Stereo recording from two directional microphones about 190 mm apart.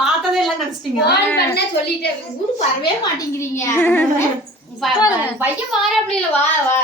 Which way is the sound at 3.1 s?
15° left (ahead or behind).